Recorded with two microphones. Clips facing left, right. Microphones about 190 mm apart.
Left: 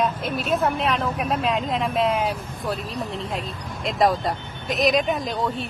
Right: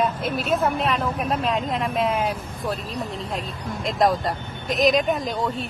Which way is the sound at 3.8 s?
Centre (ahead or behind).